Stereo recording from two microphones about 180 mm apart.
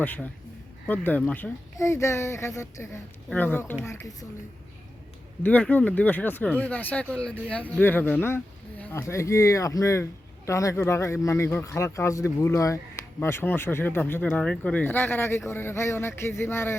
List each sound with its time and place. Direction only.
0.0 s speech: 10° left (ahead or behind)
5.4 s speech: 10° left (ahead or behind)